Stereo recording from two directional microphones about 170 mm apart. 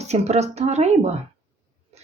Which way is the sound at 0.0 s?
40° right (ahead or behind).